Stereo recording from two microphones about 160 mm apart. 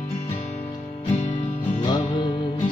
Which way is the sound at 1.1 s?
50° left (ahead or behind).